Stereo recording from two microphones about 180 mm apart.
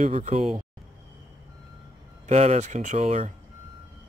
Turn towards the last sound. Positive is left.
turn(degrees=-40)  # may be behind; listen again after turning